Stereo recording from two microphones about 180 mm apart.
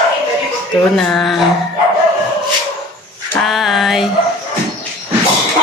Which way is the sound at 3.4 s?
Centre (ahead or behind).